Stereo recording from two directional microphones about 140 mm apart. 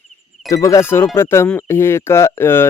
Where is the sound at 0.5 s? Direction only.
25° left (ahead or behind).